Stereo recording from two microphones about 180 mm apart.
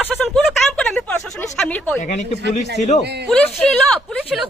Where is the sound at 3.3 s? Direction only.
5° left (ahead or behind).